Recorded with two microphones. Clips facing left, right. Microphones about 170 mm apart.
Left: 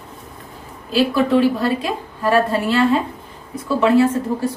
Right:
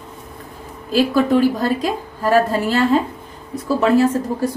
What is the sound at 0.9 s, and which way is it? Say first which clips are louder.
A woman's voice: right 1 dB; 40° right (ahead or behind).